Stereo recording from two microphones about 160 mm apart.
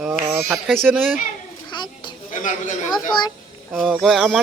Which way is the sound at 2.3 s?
55° left (ahead or behind).